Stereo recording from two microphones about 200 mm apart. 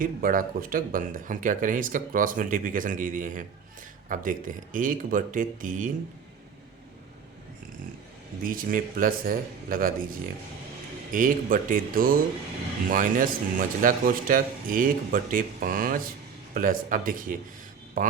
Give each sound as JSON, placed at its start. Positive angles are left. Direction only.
{"t": 0.0, "sound": "speech", "side_deg": -45}
{"t": 8.4, "sound": "a man's voice", "side_deg": -45}